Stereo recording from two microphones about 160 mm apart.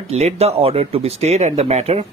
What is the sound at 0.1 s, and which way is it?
A man's voice, 40° right (ahead or behind).